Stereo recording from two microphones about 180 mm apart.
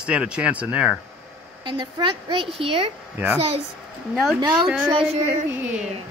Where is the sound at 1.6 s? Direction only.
25° right (ahead or behind).